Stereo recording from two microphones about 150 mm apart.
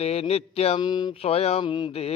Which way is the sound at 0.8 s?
30° left (ahead or behind).